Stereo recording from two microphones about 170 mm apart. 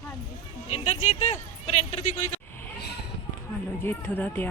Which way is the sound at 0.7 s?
40° left (ahead or behind).